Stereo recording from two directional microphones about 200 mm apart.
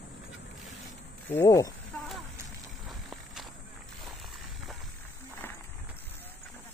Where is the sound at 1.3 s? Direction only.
15° left (ahead or behind).